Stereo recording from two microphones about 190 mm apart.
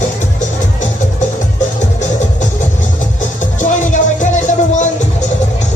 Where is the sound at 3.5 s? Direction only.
40° left (ahead or behind).